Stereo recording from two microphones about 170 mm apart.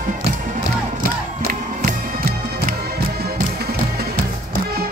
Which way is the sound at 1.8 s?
55° right (ahead or behind).